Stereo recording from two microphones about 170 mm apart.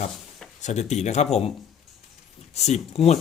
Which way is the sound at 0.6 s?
40° left (ahead or behind).